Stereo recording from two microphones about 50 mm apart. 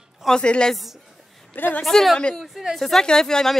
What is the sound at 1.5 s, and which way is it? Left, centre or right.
Speech, left.